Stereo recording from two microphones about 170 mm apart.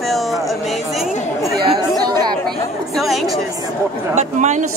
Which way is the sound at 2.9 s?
Centre (ahead or behind).